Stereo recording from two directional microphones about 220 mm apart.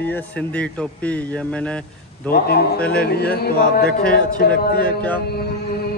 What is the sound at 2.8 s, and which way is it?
Speech, 5° left (ahead or behind).